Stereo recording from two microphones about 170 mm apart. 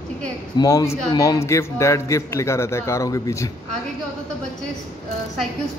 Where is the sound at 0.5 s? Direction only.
20° left (ahead or behind).